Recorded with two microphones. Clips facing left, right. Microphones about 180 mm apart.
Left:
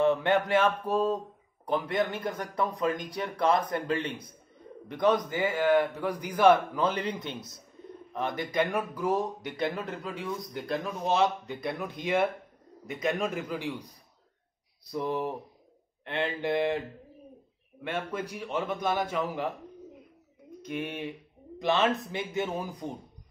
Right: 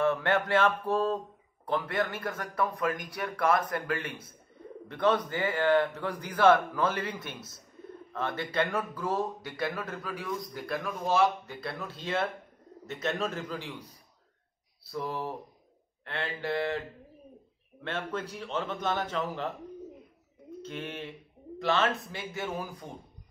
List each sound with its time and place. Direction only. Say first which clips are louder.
0.0 s speech: left 3 dB; 15° left (ahead or behind)
17.8 s speech: left 1 dB; 10° left (ahead or behind)
20.6 s speech: left 5 dB; 10° left (ahead or behind)